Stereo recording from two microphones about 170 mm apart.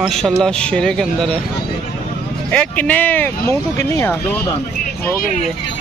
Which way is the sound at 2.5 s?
10° left (ahead or behind).